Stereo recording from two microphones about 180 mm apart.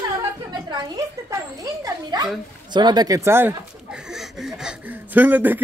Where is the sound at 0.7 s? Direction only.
20° right (ahead or behind).